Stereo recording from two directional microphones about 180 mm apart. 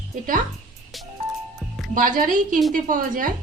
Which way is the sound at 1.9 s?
50° right (ahead or behind).